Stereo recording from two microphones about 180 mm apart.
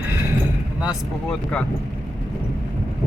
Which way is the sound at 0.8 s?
5° right (ahead or behind).